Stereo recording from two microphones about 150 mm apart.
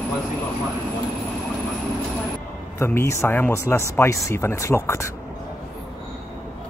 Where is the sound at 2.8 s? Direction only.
15° left (ahead or behind).